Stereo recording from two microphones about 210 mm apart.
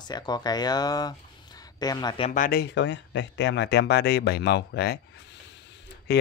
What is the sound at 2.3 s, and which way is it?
Speech, 45° left (ahead or behind).